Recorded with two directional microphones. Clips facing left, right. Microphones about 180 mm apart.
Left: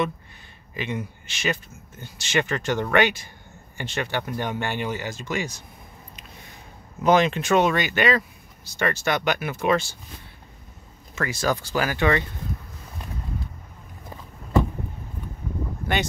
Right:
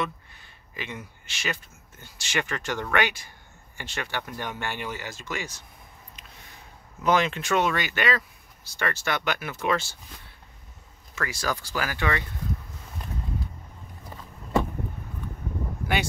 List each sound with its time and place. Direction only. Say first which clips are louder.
0.7 s speech: left 8 dB; 20° left (ahead or behind)
7.0 s speech: left 4 dB; 20° left (ahead or behind)
11.1 s speech: left 5 dB; 25° left (ahead or behind)